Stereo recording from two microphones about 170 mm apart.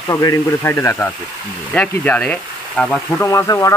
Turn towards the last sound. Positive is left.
turn(degrees=20)  # may be behind; listen again after turning